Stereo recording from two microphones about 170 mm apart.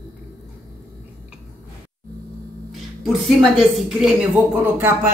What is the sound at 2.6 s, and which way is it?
A woman's voice, centre (ahead or behind).